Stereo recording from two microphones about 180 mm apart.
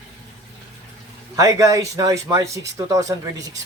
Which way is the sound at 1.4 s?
15° right (ahead or behind).